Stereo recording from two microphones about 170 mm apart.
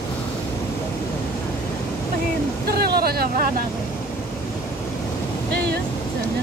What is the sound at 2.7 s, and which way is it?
Speech, 65° right (ahead or behind).